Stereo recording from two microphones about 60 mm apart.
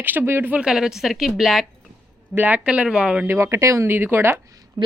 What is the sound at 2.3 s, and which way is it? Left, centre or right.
Speech, right.